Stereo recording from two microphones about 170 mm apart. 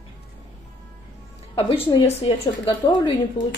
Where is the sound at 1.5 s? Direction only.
30° left (ahead or behind).